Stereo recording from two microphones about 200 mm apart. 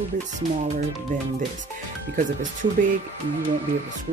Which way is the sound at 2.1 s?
40° right (ahead or behind).